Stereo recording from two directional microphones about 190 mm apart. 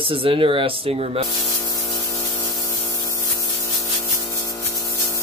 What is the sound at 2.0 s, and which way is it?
Spray, 20° left (ahead or behind).